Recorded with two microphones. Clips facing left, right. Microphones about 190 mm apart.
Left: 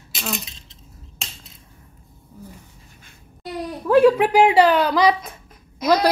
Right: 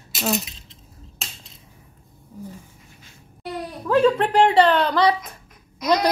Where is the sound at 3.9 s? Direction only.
10° left (ahead or behind).